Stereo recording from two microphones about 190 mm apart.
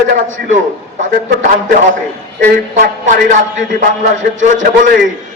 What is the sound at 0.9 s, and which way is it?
Speech, 45° right (ahead or behind).